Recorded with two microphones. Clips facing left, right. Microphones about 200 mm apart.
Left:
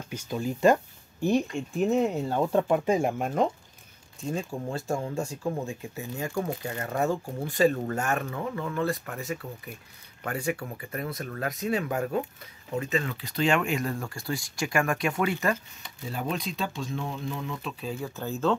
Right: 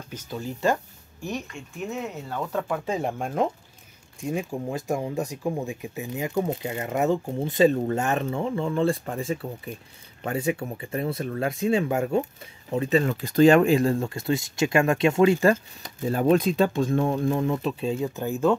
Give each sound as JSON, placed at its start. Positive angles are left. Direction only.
{"t": 0.1, "sound": "speech", "side_deg": 15}
{"t": 1.2, "sound": "speech", "side_deg": 30}
{"t": 3.0, "sound": "speech", "side_deg": 5}
{"t": 4.2, "sound": "speech", "side_deg": -15}
{"t": 16.0, "sound": "speech", "side_deg": -50}
{"t": 17.8, "sound": "speech", "side_deg": -20}